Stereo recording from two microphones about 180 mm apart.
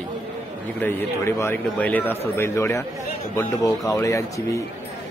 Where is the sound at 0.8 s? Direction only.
10° left (ahead or behind).